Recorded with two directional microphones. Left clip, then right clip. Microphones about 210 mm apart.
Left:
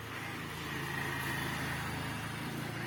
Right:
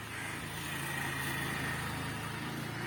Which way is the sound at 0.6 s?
30° right (ahead or behind).